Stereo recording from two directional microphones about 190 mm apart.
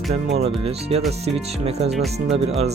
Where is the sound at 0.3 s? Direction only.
30° right (ahead or behind).